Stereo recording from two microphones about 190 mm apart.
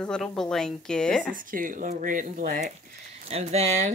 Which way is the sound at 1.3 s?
45° right (ahead or behind).